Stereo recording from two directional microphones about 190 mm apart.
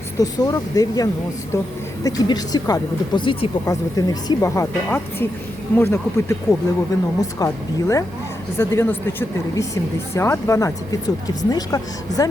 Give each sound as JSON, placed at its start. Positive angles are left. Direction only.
{"t": 0.2, "sound": "speech", "side_deg": 20}